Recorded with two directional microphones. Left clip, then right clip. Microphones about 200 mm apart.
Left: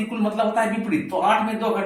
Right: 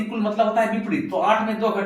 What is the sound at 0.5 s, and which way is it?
Speech, 15° left (ahead or behind).